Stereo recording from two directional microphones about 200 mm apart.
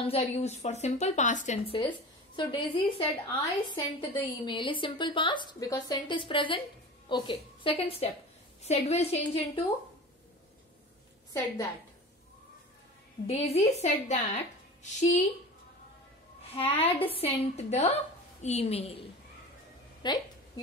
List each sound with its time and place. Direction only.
0.0 s a woman's voice: 30° left (ahead or behind)
13.3 s a woman's voice: 30° left (ahead or behind)
16.5 s a woman's voice: 30° left (ahead or behind)